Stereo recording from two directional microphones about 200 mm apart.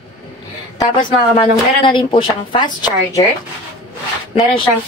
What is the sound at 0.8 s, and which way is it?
A woman's voice, 25° left (ahead or behind).